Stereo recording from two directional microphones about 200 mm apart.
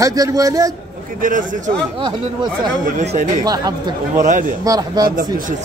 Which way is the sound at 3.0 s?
35° right (ahead or behind).